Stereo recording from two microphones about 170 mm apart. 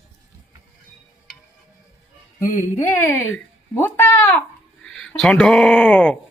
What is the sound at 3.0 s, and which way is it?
Speech, 10° left (ahead or behind).